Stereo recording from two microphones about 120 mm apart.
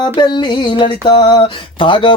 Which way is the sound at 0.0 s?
40° left (ahead or behind).